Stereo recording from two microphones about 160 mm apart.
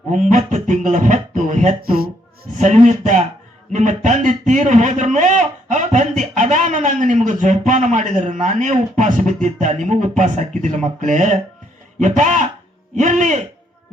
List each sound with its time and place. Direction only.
0.1 s speech: 50° right (ahead or behind)
1.8 s speech: 70° right (ahead or behind)
2.6 s a man's voice: 50° right (ahead or behind)